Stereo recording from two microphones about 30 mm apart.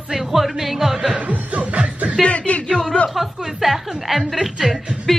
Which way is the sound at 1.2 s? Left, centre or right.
Right.